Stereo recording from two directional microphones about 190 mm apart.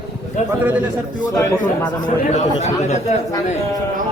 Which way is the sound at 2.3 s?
35° left (ahead or behind).